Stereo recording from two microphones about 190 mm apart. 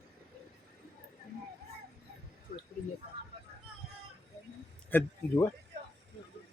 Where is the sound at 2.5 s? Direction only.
55° left (ahead or behind).